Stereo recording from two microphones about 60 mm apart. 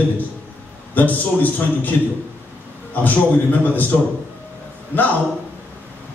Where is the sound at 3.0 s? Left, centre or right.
Left.